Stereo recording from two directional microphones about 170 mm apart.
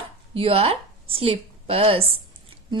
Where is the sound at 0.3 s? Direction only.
35° right (ahead or behind).